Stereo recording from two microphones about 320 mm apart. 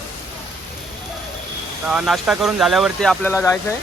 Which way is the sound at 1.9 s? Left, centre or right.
Centre.